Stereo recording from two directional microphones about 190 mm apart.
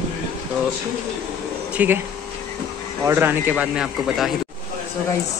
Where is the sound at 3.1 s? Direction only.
10° right (ahead or behind).